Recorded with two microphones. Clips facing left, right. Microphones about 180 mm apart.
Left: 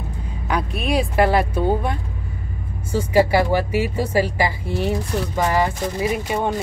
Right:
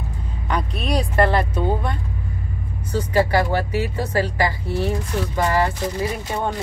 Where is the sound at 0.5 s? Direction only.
10° left (ahead or behind).